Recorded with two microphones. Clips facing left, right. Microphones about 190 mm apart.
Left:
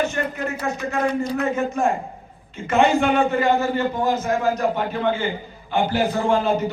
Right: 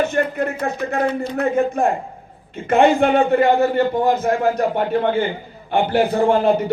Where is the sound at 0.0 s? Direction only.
55° right (ahead or behind).